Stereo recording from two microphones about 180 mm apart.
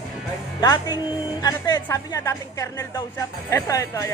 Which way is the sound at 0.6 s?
20° left (ahead or behind).